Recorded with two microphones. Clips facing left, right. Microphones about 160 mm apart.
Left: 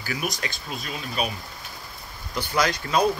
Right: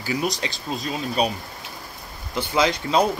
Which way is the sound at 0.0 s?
25° right (ahead or behind).